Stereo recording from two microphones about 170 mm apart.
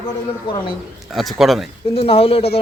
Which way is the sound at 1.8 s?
35° left (ahead or behind).